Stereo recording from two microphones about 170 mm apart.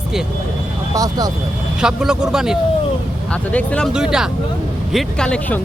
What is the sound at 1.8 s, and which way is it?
Speech, 5° right (ahead or behind).